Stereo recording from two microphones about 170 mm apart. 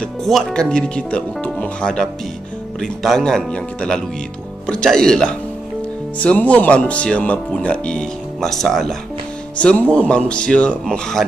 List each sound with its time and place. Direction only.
0.0 s speech: centre (ahead or behind)